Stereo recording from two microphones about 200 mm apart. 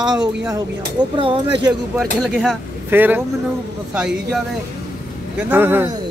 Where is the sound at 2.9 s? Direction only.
10° right (ahead or behind).